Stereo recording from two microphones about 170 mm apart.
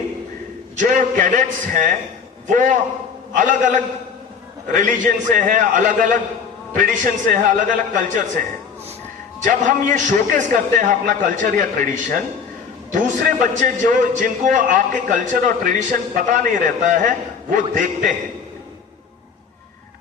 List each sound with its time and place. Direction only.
0.8 s a man's voice: 50° right (ahead or behind)
9.4 s a man's voice: 50° right (ahead or behind)